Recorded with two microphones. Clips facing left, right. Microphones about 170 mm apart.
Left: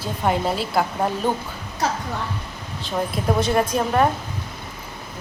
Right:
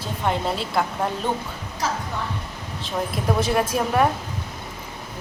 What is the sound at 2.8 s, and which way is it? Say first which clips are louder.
A woman's voice: left 2 dB; centre (ahead or behind).